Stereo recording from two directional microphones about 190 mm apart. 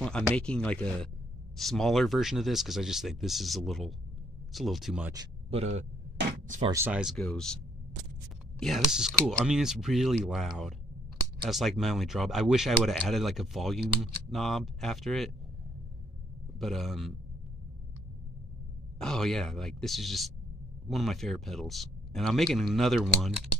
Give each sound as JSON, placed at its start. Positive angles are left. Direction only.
{"t": 0.0, "sound": "speech", "side_deg": 5}
{"t": 5.5, "sound": "a man's voice", "side_deg": -35}
{"t": 6.7, "sound": "speech", "side_deg": -10}
{"t": 16.5, "sound": "speech", "side_deg": 0}
{"t": 18.9, "sound": "speech", "side_deg": 5}